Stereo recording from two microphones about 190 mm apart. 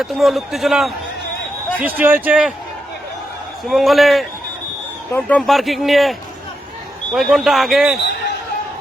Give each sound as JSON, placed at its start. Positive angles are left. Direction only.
{"t": 0.0, "sound": "speech", "side_deg": 0}
{"t": 2.0, "sound": "speech", "side_deg": -10}
{"t": 3.7, "sound": "speech", "side_deg": 0}